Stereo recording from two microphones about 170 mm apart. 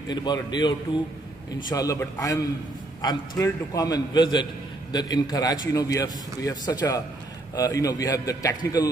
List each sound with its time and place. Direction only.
0.1 s a man's voice: 25° left (ahead or behind)